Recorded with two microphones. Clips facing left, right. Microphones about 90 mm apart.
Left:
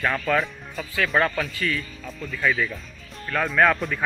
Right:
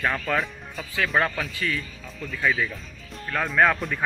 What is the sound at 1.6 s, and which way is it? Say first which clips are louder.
Speech: left 2 dB; 15° right (ahead or behind).